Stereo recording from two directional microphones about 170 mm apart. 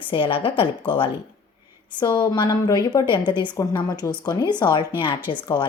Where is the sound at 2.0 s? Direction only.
25° left (ahead or behind).